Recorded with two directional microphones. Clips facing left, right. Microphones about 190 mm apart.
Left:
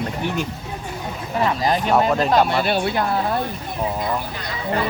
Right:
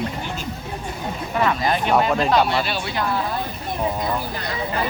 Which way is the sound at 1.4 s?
35° left (ahead or behind).